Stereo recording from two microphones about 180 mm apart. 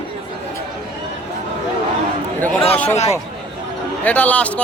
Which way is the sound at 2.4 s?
10° left (ahead or behind).